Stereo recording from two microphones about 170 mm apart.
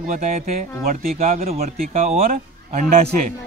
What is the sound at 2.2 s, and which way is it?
Speech, 55° right (ahead or behind).